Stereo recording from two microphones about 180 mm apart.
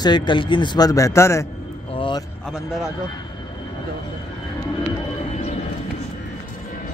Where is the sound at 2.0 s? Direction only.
25° left (ahead or behind).